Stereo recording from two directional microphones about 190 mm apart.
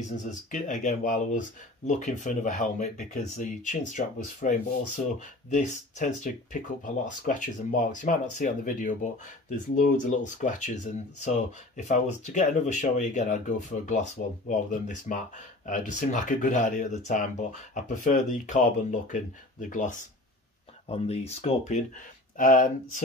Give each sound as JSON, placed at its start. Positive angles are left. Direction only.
{"t": 0.2, "sound": "speech", "side_deg": 40}